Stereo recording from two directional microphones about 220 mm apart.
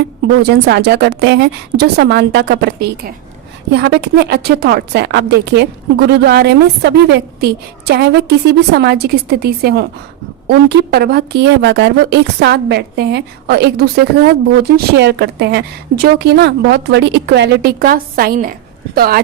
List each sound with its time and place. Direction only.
0.4 s a woman's voice: 50° right (ahead or behind)